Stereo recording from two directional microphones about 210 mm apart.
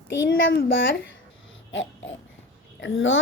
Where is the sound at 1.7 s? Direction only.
65° left (ahead or behind).